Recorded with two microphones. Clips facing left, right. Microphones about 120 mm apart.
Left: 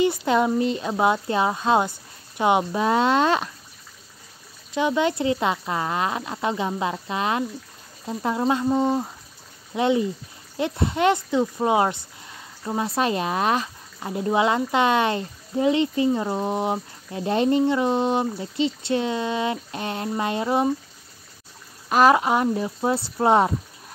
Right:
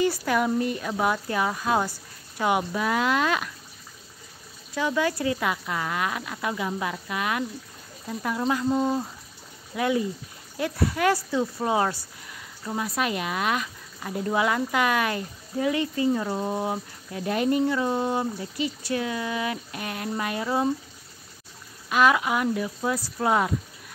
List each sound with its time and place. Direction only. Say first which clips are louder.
0.0 s speech: left 3 dB; 20° left (ahead or behind)
4.7 s speech: left 4 dB; 20° left (ahead or behind)
21.8 s speech: left 4 dB; 35° left (ahead or behind)